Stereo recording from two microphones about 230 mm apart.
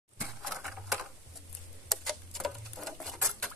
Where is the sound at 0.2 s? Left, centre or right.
Centre.